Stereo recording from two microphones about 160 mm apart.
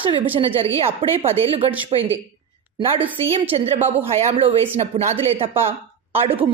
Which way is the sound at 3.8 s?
40° right (ahead or behind).